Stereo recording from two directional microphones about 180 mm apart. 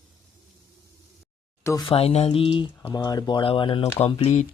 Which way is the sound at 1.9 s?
35° left (ahead or behind).